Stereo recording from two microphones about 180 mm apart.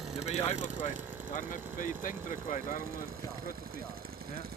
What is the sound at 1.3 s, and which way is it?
Speech, 50° left (ahead or behind).